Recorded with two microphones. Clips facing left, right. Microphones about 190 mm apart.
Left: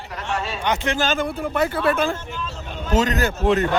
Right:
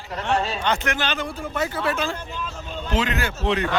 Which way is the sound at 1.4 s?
60° left (ahead or behind).